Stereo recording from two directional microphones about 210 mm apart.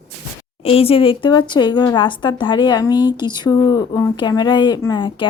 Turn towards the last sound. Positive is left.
turn(degrees=20)  # may be behind; listen again after turning